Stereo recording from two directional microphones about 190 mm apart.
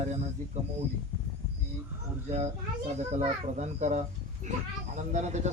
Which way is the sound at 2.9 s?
40° right (ahead or behind).